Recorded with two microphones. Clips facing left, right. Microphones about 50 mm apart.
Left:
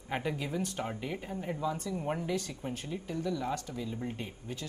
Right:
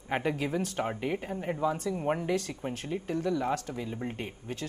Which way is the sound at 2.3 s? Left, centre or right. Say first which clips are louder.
Right 4 dB; right.